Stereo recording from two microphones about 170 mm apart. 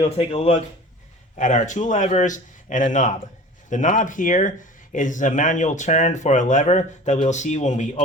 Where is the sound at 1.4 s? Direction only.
45° left (ahead or behind).